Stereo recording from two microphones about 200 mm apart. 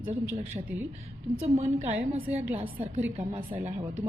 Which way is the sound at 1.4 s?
30° right (ahead or behind).